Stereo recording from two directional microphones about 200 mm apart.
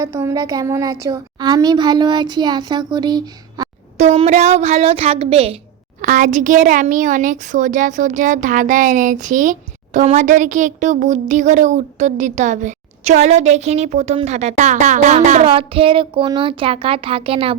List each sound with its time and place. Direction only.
0.0 s a child's voice: 15° right (ahead or behind)
3.9 s speech: 35° right (ahead or behind)
6.0 s speech: 40° right (ahead or behind)